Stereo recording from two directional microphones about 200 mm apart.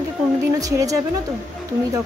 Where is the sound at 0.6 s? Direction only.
15° right (ahead or behind).